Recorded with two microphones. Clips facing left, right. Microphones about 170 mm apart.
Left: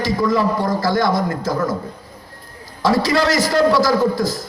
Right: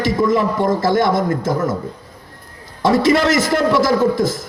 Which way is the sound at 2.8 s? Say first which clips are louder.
Right 3 dB; 25° right (ahead or behind).